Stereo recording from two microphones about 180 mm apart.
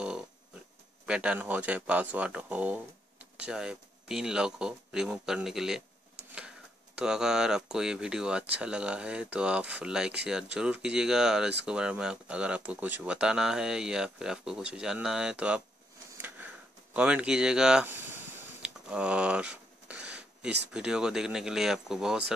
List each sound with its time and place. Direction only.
1.0 s speech: 5° right (ahead or behind)
7.0 s speech: 5° right (ahead or behind)
16.2 s a sound: 10° right (ahead or behind)
16.9 s speech: 5° right (ahead or behind)
18.6 s a sound: 5° right (ahead or behind)
20.7 s speech: 5° right (ahead or behind)